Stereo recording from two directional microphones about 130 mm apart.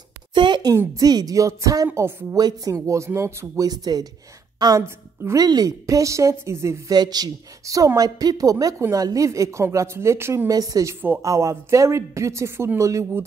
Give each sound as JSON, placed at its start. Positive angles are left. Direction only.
{"t": 0.3, "sound": "a sound", "side_deg": -35}
{"t": 0.7, "sound": "a woman's voice", "side_deg": -30}
{"t": 2.3, "sound": "a woman's voice", "side_deg": -30}